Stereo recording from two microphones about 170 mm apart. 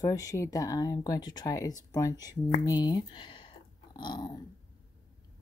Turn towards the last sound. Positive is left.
turn(degrees=25)  # may be behind; listen again after turning